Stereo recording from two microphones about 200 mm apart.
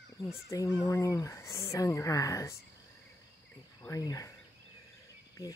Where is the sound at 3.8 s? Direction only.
15° left (ahead or behind).